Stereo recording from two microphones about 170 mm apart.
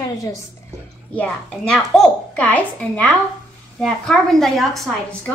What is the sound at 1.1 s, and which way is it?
A woman's voice, 5° left (ahead or behind).